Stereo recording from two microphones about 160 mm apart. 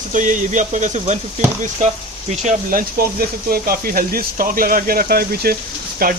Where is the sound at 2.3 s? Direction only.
50° right (ahead or behind).